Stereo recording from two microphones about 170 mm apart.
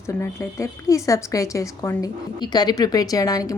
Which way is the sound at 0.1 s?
15° left (ahead or behind).